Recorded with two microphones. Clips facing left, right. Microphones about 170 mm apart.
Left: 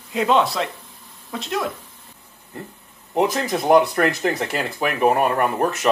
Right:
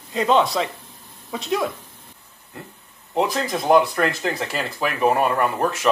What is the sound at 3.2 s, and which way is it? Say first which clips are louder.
Speech: left 2 dB; 20° left (ahead or behind).